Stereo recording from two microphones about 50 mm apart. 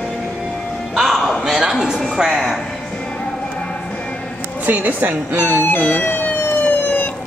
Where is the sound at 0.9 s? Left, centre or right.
Centre.